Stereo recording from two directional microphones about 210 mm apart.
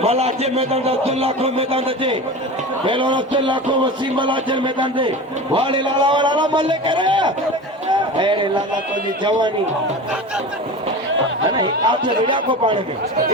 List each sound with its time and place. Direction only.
0.0 s a man's voice: 30° right (ahead or behind)
7.9 s a sound: 25° right (ahead or behind)
11.5 s a man's voice: 20° right (ahead or behind)